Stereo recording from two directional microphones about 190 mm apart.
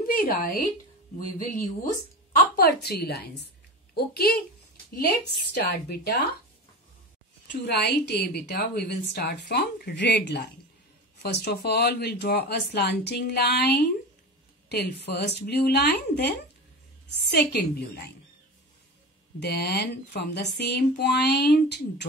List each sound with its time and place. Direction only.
0.0 s a sound: 50° left (ahead or behind)
2.5 s a woman's voice: 55° left (ahead or behind)
7.6 s a woman's voice: 60° left (ahead or behind)
19.4 s a woman's voice: 60° left (ahead or behind)